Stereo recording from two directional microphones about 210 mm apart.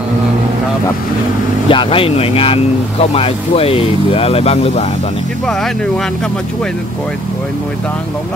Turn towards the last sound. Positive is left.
turn(degrees=5)  # may be behind; listen again after turning